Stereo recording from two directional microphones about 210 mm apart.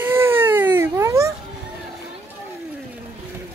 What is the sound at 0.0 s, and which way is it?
Baby cry, 10° right (ahead or behind).